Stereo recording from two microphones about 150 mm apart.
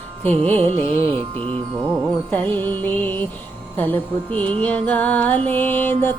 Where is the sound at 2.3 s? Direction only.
10° left (ahead or behind).